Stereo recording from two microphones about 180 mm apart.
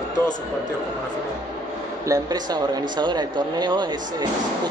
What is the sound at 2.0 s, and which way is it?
Speech, 20° right (ahead or behind).